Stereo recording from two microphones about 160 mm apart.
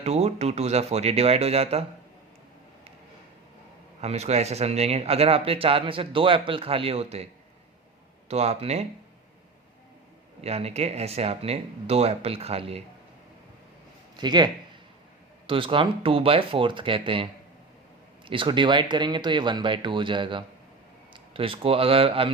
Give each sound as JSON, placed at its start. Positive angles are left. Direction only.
{"t": 0.0, "sound": "speech", "side_deg": -40}
{"t": 4.0, "sound": "speech", "side_deg": -40}
{"t": 8.3, "sound": "speech", "side_deg": -40}
{"t": 10.4, "sound": "speech", "side_deg": -40}
{"t": 14.2, "sound": "speech", "side_deg": -25}
{"t": 18.3, "sound": "speech", "side_deg": -30}